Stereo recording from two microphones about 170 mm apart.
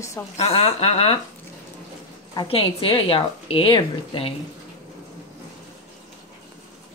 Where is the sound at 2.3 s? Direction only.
30° left (ahead or behind).